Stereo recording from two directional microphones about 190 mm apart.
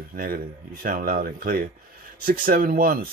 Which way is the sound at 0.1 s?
50° right (ahead or behind).